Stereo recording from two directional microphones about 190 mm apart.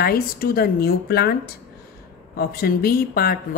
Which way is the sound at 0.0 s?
50° left (ahead or behind).